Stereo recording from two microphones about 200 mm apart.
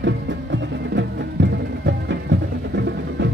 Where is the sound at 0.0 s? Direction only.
65° right (ahead or behind).